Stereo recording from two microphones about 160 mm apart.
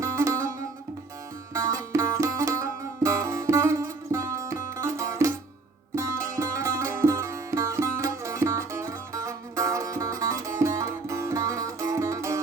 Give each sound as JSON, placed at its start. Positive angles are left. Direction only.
{"t": 0.0, "sound": "music", "side_deg": -15}
{"t": 1.5, "sound": "music", "side_deg": -20}